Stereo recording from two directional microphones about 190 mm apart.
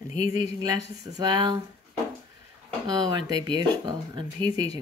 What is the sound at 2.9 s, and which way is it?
Speech, 20° right (ahead or behind).